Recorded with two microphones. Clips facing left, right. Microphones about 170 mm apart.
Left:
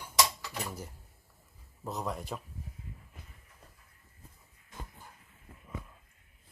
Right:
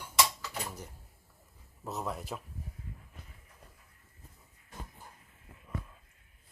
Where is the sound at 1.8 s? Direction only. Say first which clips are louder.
Left 1 dB; centre (ahead or behind).